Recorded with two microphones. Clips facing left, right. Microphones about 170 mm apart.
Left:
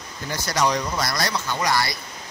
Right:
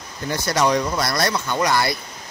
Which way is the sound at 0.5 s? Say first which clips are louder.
Right 3 dB; 55° right (ahead or behind).